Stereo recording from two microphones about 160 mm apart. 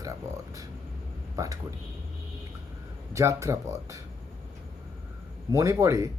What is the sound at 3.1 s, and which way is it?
Speech, 20° right (ahead or behind).